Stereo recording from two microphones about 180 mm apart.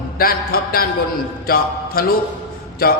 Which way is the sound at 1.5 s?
55° left (ahead or behind).